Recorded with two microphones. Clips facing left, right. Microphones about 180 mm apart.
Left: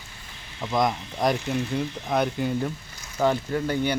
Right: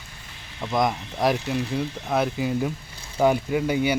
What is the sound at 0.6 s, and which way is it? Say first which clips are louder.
Speech: right 1 dB; centre (ahead or behind).